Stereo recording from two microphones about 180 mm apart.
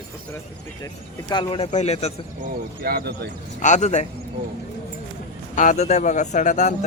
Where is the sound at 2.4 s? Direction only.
60° right (ahead or behind).